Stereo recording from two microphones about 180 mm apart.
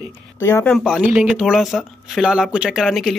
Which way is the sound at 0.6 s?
Centre (ahead or behind).